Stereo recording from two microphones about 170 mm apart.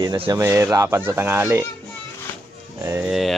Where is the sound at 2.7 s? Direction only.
20° right (ahead or behind).